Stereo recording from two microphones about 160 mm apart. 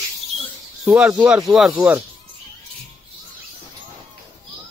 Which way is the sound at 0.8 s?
5° right (ahead or behind).